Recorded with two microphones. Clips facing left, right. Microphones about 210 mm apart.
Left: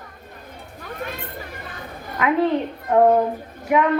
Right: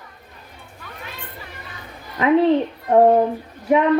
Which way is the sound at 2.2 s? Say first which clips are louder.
Right 4 dB; 30° right (ahead or behind).